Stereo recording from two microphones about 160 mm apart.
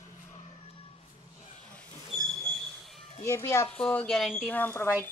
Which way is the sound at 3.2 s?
15° left (ahead or behind).